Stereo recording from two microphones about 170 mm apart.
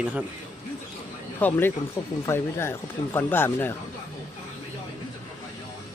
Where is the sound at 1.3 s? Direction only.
10° left (ahead or behind).